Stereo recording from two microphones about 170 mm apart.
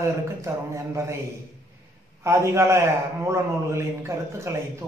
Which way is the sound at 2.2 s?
15° right (ahead or behind).